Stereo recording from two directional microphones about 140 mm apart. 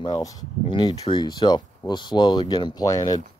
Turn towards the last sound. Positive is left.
turn(degrees=25)  # may be behind; listen again after turning